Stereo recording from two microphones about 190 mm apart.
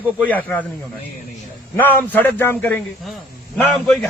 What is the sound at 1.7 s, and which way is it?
A man's voice, 10° left (ahead or behind).